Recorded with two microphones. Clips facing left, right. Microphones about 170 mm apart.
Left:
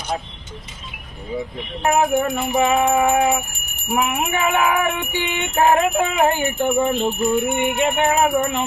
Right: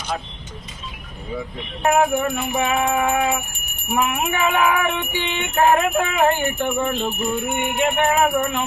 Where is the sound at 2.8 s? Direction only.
5° left (ahead or behind).